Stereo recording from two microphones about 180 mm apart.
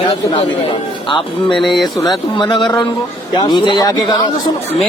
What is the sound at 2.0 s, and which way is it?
Speech, 25° left (ahead or behind).